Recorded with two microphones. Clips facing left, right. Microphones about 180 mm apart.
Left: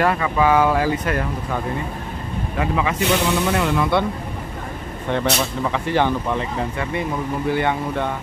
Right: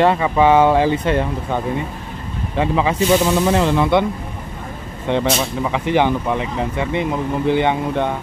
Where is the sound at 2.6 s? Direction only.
30° right (ahead or behind).